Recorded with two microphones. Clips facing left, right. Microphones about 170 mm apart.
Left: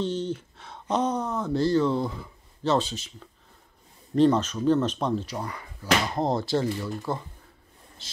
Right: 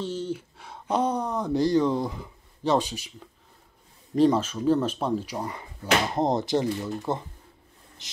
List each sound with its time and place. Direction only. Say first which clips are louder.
0.0 s speech: left 2 dB; 10° right (ahead or behind)
4.1 s speech: even; 10° right (ahead or behind)
5.4 s speech: right 2 dB; 20° right (ahead or behind)